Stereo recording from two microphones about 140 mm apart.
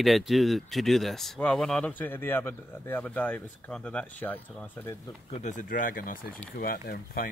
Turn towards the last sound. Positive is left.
turn(degrees=90)